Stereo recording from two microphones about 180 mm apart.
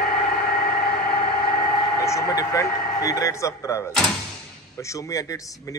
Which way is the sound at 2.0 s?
15° left (ahead or behind).